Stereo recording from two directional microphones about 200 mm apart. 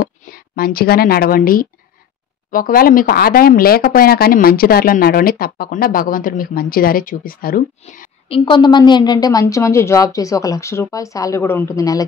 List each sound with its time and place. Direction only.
0.0 s a woman's voice: 50° left (ahead or behind)
8.3 s speech: 25° left (ahead or behind)